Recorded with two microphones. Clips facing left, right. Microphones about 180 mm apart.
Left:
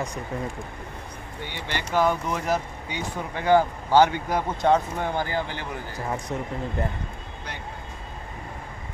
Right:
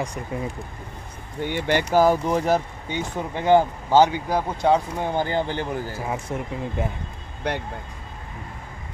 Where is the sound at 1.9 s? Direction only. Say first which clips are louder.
Right 4 dB; 35° right (ahead or behind).